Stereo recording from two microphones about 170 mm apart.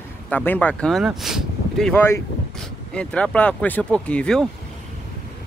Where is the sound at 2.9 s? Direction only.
5° left (ahead or behind).